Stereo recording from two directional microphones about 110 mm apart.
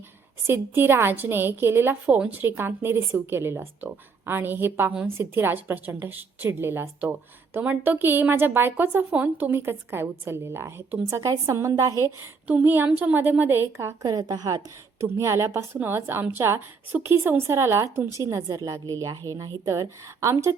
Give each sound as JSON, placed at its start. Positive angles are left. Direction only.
{"t": 0.4, "sound": "a woman's voice", "side_deg": -20}
{"t": 14.0, "sound": "a woman's voice", "side_deg": -35}